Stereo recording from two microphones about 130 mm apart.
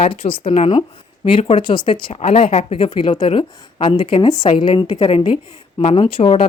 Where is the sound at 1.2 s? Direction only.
45° left (ahead or behind).